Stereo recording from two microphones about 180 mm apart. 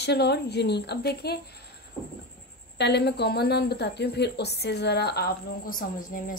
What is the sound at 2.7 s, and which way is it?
Speech, 70° left (ahead or behind).